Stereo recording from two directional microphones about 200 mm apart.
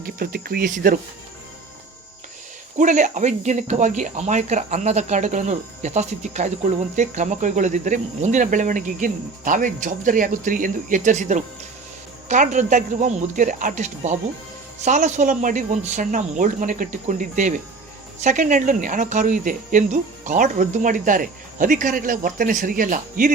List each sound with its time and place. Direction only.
0.0 s speech: 50° right (ahead or behind)
2.7 s speech: 40° right (ahead or behind)